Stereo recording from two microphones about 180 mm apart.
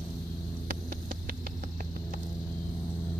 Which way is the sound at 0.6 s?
50° right (ahead or behind).